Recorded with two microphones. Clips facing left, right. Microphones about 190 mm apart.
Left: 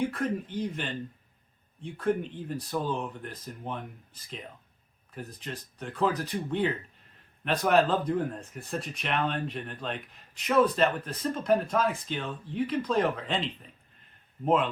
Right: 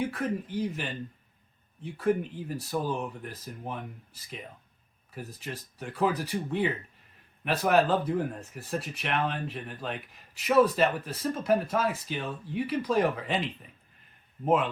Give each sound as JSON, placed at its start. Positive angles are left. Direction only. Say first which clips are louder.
{"t": 0.0, "sound": "speech", "louder": "left 1 dB", "side_deg": -5}